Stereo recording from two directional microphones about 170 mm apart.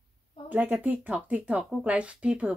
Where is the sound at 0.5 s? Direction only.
10° right (ahead or behind).